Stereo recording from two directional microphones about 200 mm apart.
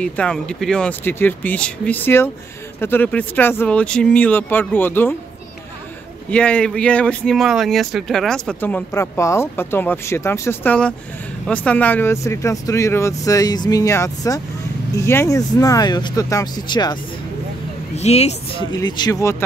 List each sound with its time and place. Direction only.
0.0 s speech: 5° left (ahead or behind)
6.3 s speech: 5° left (ahead or behind); by 17.0 s 20° left (ahead or behind)
17.9 s speech: 35° left (ahead or behind)
18.7 s speech: 20° left (ahead or behind)